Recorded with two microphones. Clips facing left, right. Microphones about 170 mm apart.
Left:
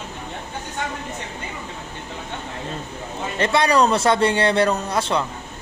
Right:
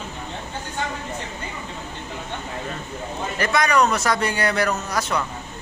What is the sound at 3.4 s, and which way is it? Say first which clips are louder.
A man's voice: left 2 dB; 30° left (ahead or behind).